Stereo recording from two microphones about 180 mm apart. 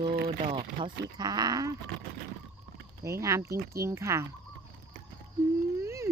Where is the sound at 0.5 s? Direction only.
25° right (ahead or behind).